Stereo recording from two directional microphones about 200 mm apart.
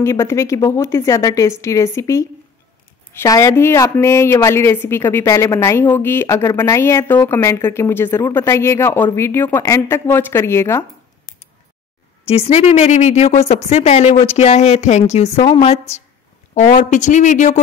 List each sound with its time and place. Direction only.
0.0 s a woman's voice: 15° left (ahead or behind)
12.3 s a woman's voice: 30° left (ahead or behind)